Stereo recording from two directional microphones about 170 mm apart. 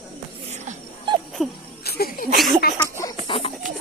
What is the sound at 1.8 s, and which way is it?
Music, 65° left (ahead or behind).